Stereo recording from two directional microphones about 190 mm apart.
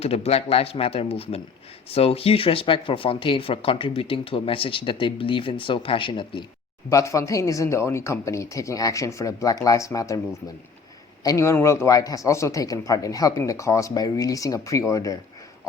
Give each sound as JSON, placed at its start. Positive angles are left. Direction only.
{"t": 0.0, "sound": "a man's voice", "side_deg": 30}
{"t": 11.2, "sound": "a man's voice", "side_deg": 15}